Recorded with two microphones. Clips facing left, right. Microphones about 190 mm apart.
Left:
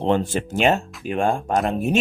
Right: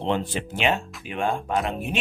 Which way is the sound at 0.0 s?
45° left (ahead or behind).